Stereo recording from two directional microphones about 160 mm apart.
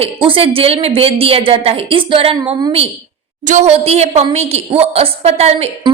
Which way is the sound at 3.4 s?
45° right (ahead or behind).